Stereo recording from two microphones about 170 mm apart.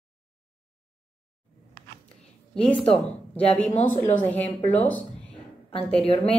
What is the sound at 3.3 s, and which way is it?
A woman's voice, 10° left (ahead or behind).